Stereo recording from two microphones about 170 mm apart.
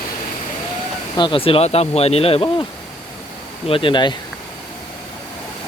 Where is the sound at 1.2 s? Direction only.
30° left (ahead or behind).